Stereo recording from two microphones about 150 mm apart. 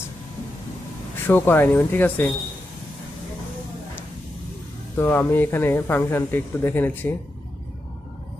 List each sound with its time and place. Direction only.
1.2 s speech: 15° left (ahead or behind)
4.9 s speech: 15° left (ahead or behind)